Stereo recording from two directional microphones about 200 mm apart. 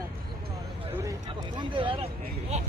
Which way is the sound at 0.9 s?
15° right (ahead or behind).